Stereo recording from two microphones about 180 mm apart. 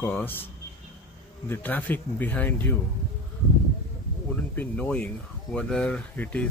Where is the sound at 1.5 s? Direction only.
10° left (ahead or behind).